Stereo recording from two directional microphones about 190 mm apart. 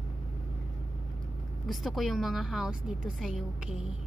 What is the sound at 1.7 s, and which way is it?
A woman's voice, centre (ahead or behind).